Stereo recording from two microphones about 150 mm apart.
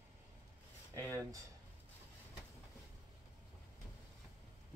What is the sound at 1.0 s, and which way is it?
Speech, 25° right (ahead or behind).